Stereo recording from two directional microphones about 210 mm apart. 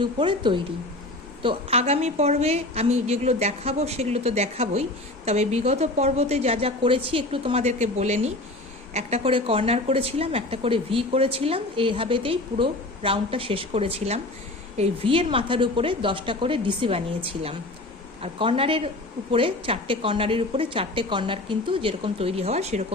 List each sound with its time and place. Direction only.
0.0 s a woman's voice: 20° right (ahead or behind)
18.2 s a woman's voice: 25° right (ahead or behind)